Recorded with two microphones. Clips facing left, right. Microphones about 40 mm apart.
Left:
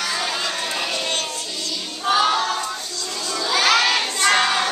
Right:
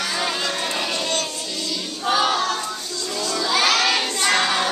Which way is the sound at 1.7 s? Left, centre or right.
Centre.